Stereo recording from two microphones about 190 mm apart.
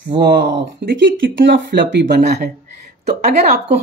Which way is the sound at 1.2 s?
70° right (ahead or behind).